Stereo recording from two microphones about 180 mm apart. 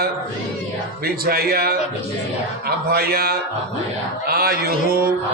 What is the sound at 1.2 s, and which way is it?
Speech, 60° right (ahead or behind).